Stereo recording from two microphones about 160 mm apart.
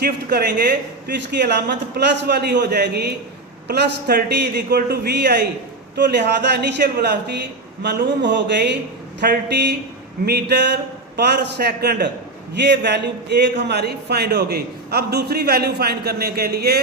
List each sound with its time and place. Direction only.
0.0 s speech: 80° right